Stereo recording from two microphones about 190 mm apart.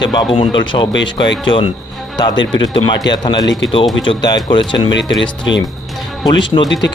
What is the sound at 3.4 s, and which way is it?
Speech, 80° left.